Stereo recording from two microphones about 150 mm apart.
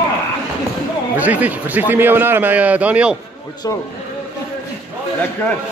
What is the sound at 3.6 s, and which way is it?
Speech, 25° left (ahead or behind).